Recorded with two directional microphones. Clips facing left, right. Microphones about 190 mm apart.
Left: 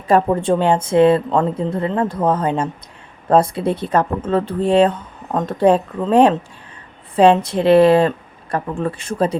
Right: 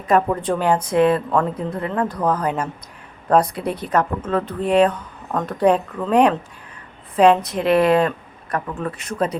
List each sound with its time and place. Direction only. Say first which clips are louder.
0.1 s speech: left 3 dB; 25° left (ahead or behind)